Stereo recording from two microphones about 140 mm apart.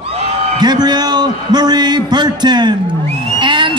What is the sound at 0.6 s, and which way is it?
A woman's voice, 30° right (ahead or behind).